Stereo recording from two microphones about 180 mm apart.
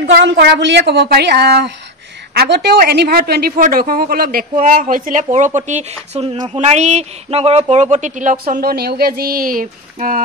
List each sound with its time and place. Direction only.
0.0 s a woman's voice: 80° right; by 10.2 s 50° right (ahead or behind)